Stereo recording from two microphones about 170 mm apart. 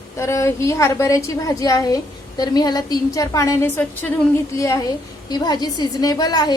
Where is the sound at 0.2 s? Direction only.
15° left (ahead or behind).